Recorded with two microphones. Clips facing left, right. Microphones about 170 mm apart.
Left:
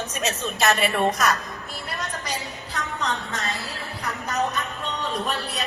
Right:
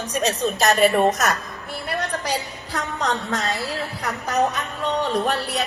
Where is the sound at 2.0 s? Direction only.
70° right (ahead or behind).